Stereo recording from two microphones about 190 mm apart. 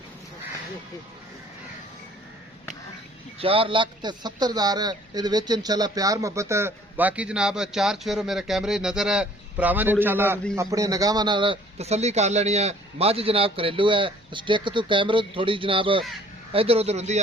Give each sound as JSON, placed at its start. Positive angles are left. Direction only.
{"t": 3.3, "sound": "a man's voice", "side_deg": -30}